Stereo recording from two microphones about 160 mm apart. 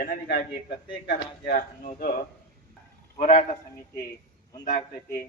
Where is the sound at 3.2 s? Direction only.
45° left (ahead or behind).